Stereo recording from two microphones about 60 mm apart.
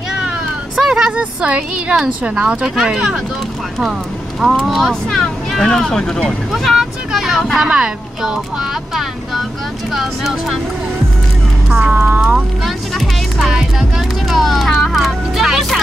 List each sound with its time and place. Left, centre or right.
0.7 s vehicle: centre
1.1 s a woman's voice: centre
2.4 s speech: centre
4.6 s speech: centre
9.9 s speech: centre
11.8 s a woman's voice: right
12.6 s music: centre